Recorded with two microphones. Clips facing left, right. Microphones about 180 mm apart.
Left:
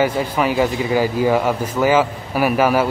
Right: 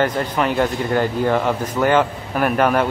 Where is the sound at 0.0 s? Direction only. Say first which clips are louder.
Left 1 dB; 5° left (ahead or behind).